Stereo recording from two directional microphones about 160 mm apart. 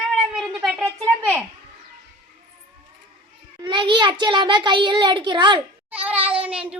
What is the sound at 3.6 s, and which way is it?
A child's voice, 30° right (ahead or behind).